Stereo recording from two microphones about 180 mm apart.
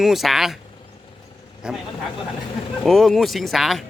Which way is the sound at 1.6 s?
5° right (ahead or behind).